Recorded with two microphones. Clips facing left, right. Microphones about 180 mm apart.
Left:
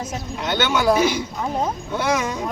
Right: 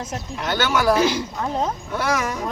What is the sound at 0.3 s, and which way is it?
Speech, 20° left (ahead or behind).